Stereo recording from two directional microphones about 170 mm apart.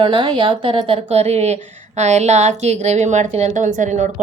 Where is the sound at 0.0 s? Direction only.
30° right (ahead or behind).